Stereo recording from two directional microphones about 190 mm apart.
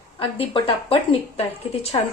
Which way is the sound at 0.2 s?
30° left (ahead or behind).